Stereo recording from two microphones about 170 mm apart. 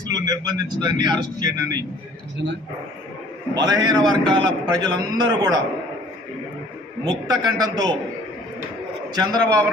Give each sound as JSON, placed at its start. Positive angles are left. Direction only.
{"t": 0.1, "sound": "speech", "side_deg": -25}
{"t": 3.5, "sound": "speech", "side_deg": -25}
{"t": 7.0, "sound": "speech", "side_deg": -25}
{"t": 9.1, "sound": "speech", "side_deg": -25}